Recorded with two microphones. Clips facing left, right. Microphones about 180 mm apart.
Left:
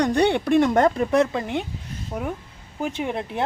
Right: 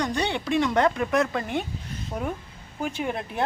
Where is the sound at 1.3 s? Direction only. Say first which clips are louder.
Left 2 dB; 20° left (ahead or behind).